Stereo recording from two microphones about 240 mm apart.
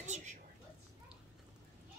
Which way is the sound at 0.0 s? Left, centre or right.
Right.